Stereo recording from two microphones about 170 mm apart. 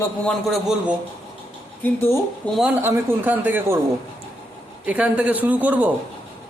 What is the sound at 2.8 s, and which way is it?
Speech, 10° right (ahead or behind).